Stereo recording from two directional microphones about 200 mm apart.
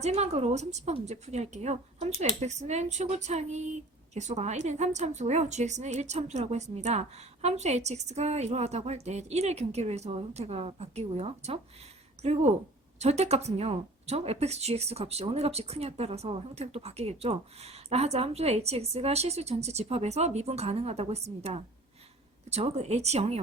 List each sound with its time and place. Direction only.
0.0 s speech: 30° right (ahead or behind)